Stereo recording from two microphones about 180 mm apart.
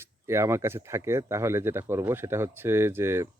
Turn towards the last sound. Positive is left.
turn(degrees=-15)  # may be behind; listen again after turning